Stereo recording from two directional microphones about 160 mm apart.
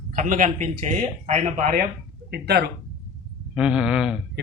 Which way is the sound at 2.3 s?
90° right.